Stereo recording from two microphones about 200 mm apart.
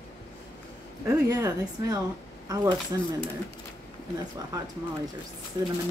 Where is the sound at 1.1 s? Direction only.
15° right (ahead or behind).